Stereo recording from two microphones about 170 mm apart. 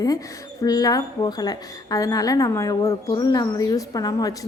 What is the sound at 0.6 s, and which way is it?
A woman's voice, 20° left (ahead or behind).